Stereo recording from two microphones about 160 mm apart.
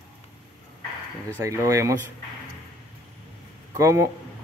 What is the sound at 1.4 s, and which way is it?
Speech, 20° right (ahead or behind).